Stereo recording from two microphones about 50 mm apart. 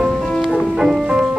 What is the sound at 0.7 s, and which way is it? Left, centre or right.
Music, centre.